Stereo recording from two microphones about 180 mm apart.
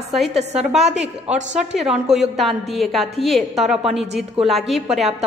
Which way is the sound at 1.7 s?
5° right (ahead or behind).